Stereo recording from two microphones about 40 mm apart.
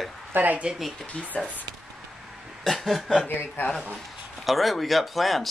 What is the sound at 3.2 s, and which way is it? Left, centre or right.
Speech, left.